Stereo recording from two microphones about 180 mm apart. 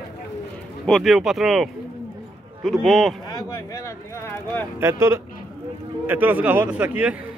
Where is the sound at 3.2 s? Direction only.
20° left (ahead or behind).